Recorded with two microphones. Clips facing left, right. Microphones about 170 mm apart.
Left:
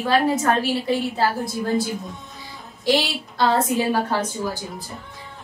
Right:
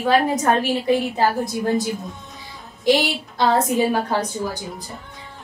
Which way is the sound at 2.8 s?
20° right (ahead or behind).